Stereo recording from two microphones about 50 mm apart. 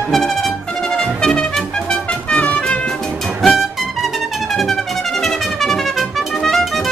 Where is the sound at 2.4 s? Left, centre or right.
Left.